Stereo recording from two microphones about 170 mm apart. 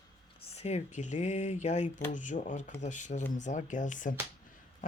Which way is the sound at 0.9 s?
45° left (ahead or behind).